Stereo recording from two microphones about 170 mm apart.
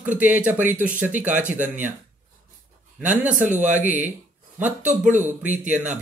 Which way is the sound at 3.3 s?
45° right (ahead or behind).